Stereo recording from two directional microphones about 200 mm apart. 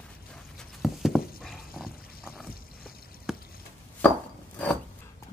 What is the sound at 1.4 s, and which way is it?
Dog, centre (ahead or behind).